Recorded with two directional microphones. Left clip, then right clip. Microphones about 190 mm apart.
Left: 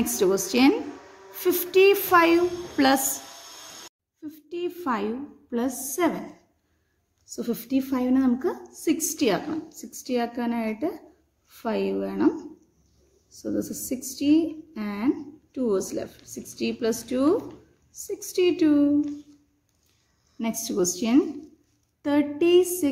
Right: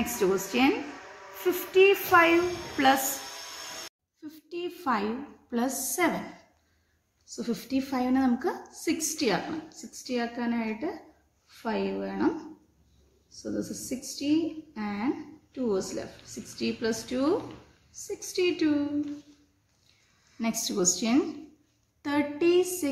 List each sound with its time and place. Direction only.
0.0 s speech: 55° left (ahead or behind)
4.2 s a woman's voice: 25° left (ahead or behind)
7.2 s a woman's voice: 40° left (ahead or behind)
13.4 s a woman's voice: 50° left (ahead or behind)
20.6 s a woman's voice: 35° left (ahead or behind)